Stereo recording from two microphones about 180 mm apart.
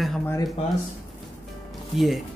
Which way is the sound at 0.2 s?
15° left (ahead or behind).